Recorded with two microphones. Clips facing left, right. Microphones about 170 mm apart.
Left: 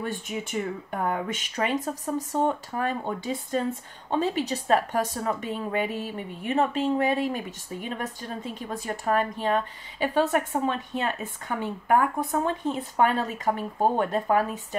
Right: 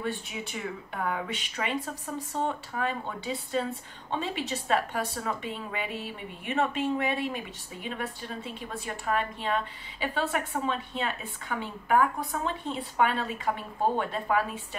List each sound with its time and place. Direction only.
0.0 s a woman's voice: 45° left (ahead or behind)